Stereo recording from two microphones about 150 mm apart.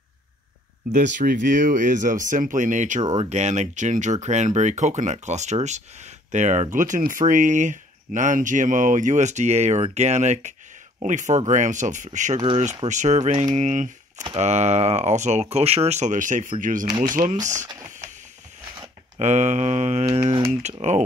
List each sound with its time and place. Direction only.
0.9 s speech: 55° right (ahead or behind)
3.0 s speech: 30° right (ahead or behind)
3.3 s speech: 50° right (ahead or behind)
17.8 s a sound: 55° right (ahead or behind)
19.1 s speech: 50° right (ahead or behind)